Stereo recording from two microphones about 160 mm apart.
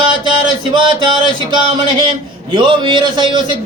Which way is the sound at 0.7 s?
30° right (ahead or behind).